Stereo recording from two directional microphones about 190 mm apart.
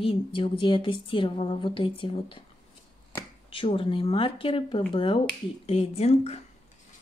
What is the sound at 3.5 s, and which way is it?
A woman's voice, 30° left (ahead or behind).